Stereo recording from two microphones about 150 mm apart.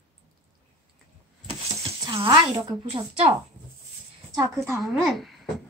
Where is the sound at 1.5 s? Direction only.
40° right (ahead or behind).